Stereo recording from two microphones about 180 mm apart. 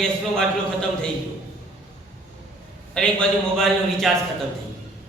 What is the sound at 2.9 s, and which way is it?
Speech, 5° left (ahead or behind).